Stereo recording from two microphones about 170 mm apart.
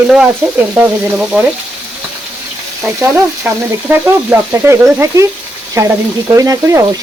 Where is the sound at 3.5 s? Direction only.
10° right (ahead or behind).